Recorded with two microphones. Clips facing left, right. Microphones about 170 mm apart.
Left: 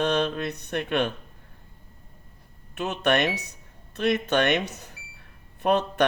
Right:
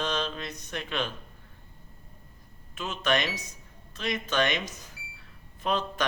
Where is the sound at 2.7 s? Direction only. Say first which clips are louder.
Left 5 dB; 60° left (ahead or behind).